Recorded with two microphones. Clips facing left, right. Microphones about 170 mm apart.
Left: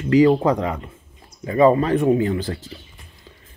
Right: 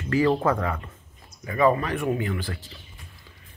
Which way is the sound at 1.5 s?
30° left (ahead or behind).